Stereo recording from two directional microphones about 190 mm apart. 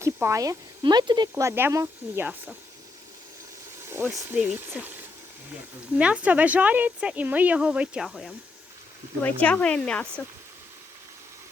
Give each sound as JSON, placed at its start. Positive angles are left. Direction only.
{"t": 0.0, "sound": "speech", "side_deg": -15}
{"t": 3.8, "sound": "speech", "side_deg": -10}
{"t": 6.0, "sound": "speech", "side_deg": -5}